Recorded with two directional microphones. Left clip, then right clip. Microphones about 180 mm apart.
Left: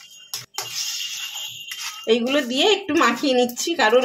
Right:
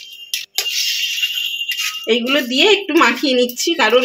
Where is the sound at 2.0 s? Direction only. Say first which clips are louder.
Right 2 dB; 25° right (ahead or behind).